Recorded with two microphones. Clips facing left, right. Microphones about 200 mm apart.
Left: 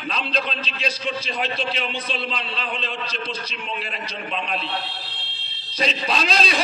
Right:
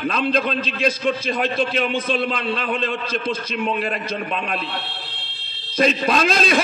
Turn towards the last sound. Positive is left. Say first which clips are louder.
# right 5 dB
turn(degrees=-50)  # may be behind; listen again after turning